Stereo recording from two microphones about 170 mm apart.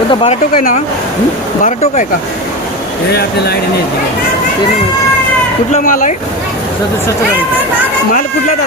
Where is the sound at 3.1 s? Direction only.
70° left (ahead or behind).